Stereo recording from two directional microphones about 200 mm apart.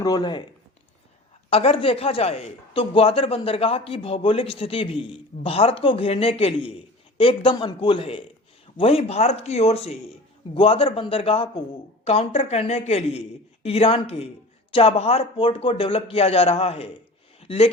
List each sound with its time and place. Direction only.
0.0 s a man's voice: 20° left (ahead or behind)
1.5 s a man's voice: 30° left (ahead or behind)
17.4 s a sound: 30° left (ahead or behind)